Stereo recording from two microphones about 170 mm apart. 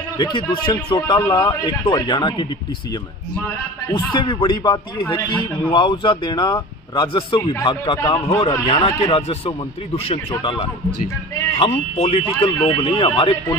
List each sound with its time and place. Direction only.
0.2 s a man's voice: 30° left (ahead or behind)
3.9 s a man's voice: 30° left (ahead or behind)
8.0 s a man's voice: 20° left (ahead or behind); by 12.3 s 40° left (ahead or behind)
12.4 s a man's voice: 15° left (ahead or behind)
12.8 s a man's voice: 30° left (ahead or behind)